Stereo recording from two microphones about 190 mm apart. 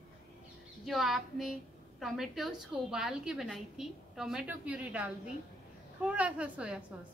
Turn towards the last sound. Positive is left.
turn(degrees=-5)  # may be behind; listen again after turning